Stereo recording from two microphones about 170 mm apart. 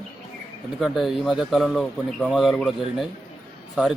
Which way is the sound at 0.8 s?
Centre (ahead or behind).